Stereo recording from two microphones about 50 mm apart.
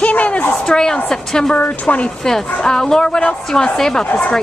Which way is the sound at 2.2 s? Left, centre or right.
Centre.